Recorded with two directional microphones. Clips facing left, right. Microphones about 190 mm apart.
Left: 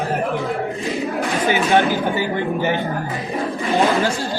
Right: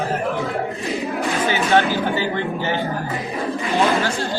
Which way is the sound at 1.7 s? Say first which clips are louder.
Right 1 dB; 15° left (ahead or behind).